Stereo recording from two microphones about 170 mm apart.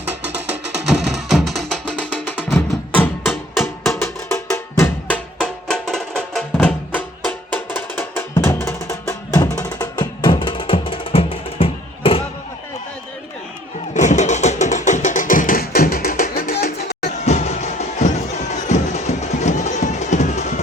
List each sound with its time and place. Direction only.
1.1 s music: centre (ahead or behind)
3.2 s music: centre (ahead or behind)
4.3 s music: 15° left (ahead or behind); by 12.2 s 35° left (ahead or behind)
13.9 s music: 45° left (ahead or behind); by 16.7 s 60° left (ahead or behind)
17.0 s music: 40° left (ahead or behind)